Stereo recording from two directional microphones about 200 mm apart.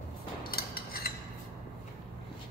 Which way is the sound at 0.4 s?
50° left (ahead or behind).